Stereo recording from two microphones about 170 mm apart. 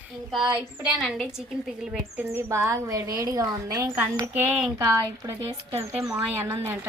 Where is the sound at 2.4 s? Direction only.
15° right (ahead or behind).